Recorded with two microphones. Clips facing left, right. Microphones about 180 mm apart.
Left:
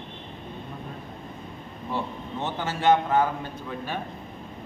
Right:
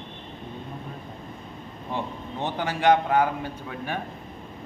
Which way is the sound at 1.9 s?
15° right (ahead or behind).